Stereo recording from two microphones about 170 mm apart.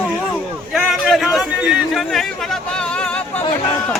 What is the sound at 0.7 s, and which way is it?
A man's voice, centre (ahead or behind).